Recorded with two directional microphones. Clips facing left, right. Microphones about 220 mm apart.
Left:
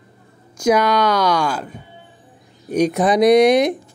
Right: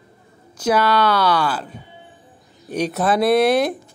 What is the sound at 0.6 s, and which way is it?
Speech, 10° left (ahead or behind).